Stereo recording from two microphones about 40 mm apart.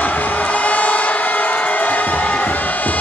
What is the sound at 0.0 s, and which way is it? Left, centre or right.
Crowd, left.